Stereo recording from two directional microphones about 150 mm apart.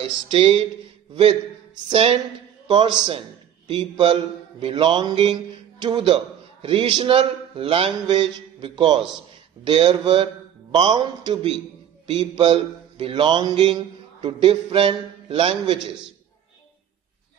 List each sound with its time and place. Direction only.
0.3 s mantra: 35° right (ahead or behind)
1.9 s mantra: 40° right (ahead or behind)